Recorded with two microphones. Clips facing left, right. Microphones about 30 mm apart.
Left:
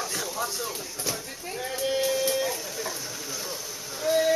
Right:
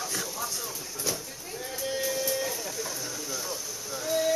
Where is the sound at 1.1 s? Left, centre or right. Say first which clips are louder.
Even; centre.